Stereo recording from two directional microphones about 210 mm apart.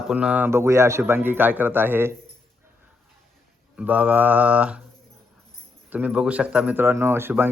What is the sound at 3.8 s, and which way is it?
A man's voice, 5° right (ahead or behind).